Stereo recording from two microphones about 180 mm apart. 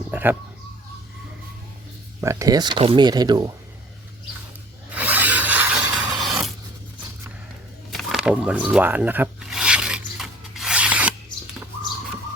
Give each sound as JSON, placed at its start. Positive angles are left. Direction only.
{"t": 0.1, "sound": "a sound", "side_deg": -10}
{"t": 2.2, "sound": "speech", "side_deg": -15}
{"t": 4.9, "sound": "filing", "side_deg": -10}
{"t": 7.9, "sound": "rub", "side_deg": 0}